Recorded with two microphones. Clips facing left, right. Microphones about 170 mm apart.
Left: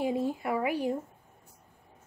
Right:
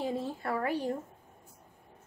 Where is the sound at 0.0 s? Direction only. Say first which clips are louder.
Left 4 dB; 15° left (ahead or behind).